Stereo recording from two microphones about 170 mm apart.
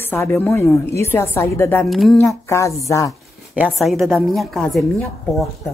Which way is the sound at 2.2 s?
15° left (ahead or behind).